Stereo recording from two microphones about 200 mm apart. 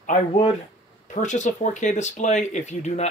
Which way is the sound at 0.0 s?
35° left (ahead or behind).